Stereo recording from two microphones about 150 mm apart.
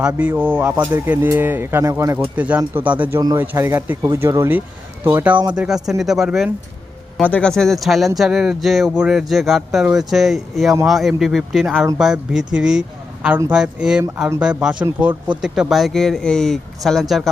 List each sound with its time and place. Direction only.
0.0 s speech: 10° right (ahead or behind)
7.2 s speech: 10° left (ahead or behind)